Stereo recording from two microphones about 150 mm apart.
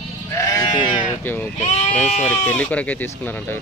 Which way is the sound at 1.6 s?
50° left (ahead or behind).